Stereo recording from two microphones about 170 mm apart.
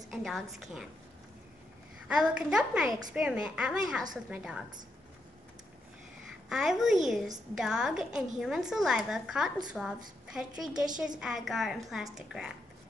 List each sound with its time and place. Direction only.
0.1 s a woman's voice: centre (ahead or behind)
2.0 s a woman's voice: 5° right (ahead or behind)
6.5 s a woman's voice: centre (ahead or behind)